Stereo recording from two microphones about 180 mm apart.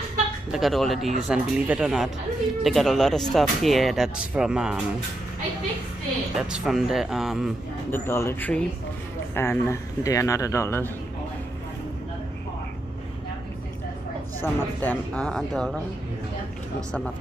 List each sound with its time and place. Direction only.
0.5 s speech: centre (ahead or behind)
6.3 s speech: 5° right (ahead or behind)
7.9 s a man's voice: 15° left (ahead or behind)
14.4 s speech: 10° left (ahead or behind)